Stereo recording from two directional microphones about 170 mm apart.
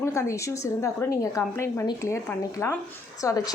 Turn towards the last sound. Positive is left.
turn(degrees=20)  # may be behind; listen again after turning